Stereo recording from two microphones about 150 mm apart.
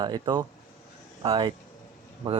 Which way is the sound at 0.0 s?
30° right (ahead or behind).